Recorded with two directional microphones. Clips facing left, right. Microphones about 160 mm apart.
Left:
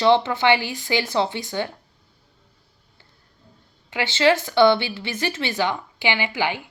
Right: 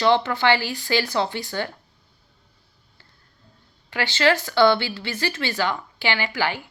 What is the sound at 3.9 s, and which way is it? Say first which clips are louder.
Speech: left 2 dB; 20° left (ahead or behind).